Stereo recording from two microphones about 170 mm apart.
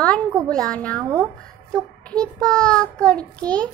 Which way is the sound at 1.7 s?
5° left (ahead or behind).